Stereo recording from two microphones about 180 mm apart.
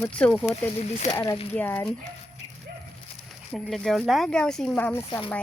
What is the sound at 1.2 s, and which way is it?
Speech, 30° left (ahead or behind).